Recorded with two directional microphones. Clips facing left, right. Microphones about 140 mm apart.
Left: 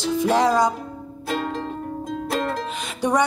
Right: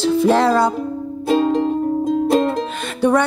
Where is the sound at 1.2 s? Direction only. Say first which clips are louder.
Right 10 dB; 25° right (ahead or behind).